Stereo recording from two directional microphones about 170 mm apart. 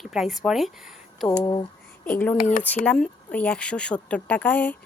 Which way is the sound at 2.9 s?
5° left (ahead or behind).